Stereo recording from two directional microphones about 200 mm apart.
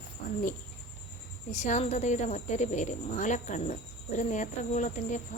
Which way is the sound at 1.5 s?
35° left (ahead or behind).